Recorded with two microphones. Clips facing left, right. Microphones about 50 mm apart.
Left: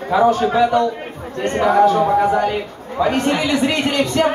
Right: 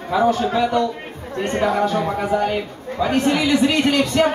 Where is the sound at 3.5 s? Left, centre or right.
Left.